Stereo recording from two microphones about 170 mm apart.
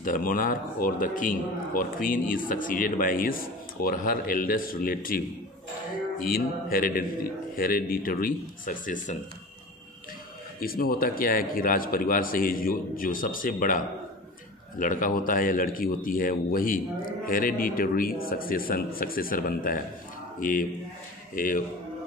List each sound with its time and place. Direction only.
0.0 s a man's voice: 55° left (ahead or behind)
6.2 s a man's voice: 60° left (ahead or behind)
10.6 s a man's voice: 60° left (ahead or behind)